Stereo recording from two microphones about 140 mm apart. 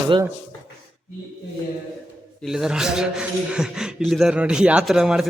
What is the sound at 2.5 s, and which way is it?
A man's voice, 5° right (ahead or behind).